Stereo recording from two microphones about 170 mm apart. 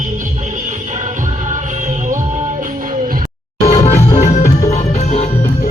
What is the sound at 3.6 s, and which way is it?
Music, 40° left (ahead or behind).